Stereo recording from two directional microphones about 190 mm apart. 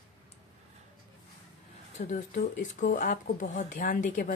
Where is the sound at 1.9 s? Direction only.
40° left (ahead or behind).